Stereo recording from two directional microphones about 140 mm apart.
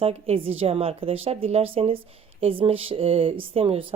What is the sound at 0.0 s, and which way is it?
A woman's voice, 45° right (ahead or behind).